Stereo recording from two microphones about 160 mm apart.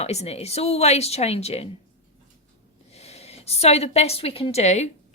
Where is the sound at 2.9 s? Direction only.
40° left (ahead or behind).